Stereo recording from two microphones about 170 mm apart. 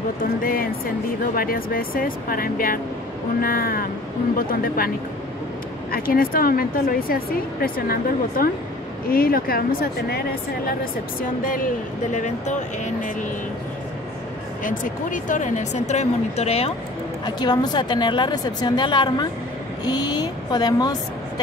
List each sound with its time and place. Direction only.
0.2 s speech: 55° left (ahead or behind)
11.1 s speech: 55° left (ahead or behind)
14.6 s speech: 50° left (ahead or behind)
17.2 s a woman's voice: 25° left (ahead or behind)